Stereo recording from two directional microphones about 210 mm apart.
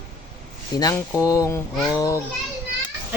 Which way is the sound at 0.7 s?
15° left (ahead or behind).